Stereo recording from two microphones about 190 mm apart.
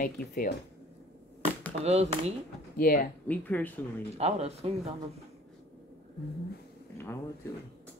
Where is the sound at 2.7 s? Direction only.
50° left (ahead or behind).